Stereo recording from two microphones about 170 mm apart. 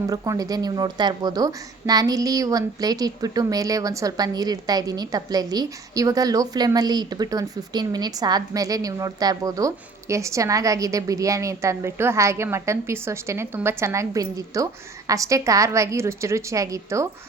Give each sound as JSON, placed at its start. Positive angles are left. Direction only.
{"t": 0.1, "sound": "a woman's voice", "side_deg": -20}